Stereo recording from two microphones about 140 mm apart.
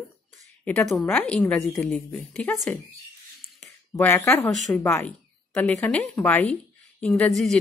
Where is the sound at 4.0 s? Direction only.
20° left (ahead or behind).